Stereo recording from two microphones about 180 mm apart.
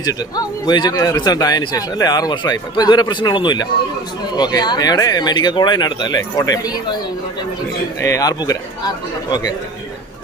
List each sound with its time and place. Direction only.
0.0 s speech: 20° left (ahead or behind)
8.0 s speech: 20° left (ahead or behind)